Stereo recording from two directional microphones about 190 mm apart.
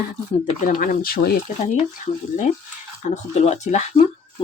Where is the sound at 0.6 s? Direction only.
45° left (ahead or behind).